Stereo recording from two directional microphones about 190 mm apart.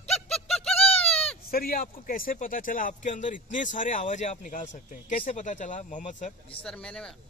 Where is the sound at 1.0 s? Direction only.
5° left (ahead or behind).